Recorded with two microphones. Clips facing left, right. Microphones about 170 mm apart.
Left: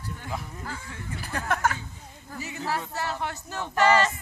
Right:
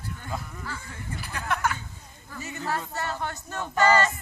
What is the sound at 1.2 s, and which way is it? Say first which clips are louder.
Speech: left 2 dB; 45° left (ahead or behind).